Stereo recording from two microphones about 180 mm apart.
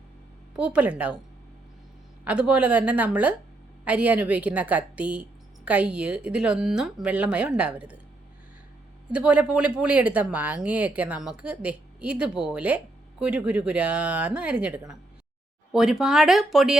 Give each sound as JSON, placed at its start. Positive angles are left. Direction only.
{"t": 0.5, "sound": "speech", "side_deg": -5}
{"t": 2.2, "sound": "a woman's voice", "side_deg": -5}
{"t": 9.1, "sound": "a woman's voice", "side_deg": -5}